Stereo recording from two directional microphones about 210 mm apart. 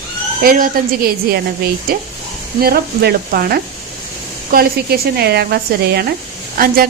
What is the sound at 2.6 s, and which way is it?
Speech, 45° right (ahead or behind).